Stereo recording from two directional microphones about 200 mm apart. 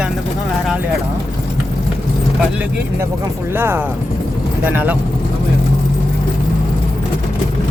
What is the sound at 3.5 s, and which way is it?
Speech, 10° right (ahead or behind).